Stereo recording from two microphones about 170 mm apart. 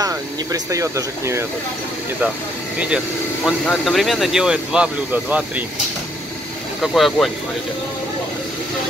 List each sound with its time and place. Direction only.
0.0 s speech: 20° right (ahead or behind)
3.4 s speech: centre (ahead or behind)
6.8 s speech: centre (ahead or behind)